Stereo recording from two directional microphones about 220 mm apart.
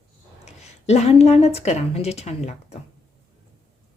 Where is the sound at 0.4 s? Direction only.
30° left (ahead or behind).